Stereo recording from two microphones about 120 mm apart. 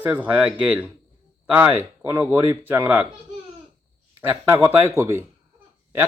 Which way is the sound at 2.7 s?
15° right (ahead or behind).